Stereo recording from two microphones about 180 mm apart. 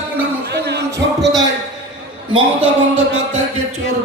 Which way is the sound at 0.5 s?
70° right (ahead or behind).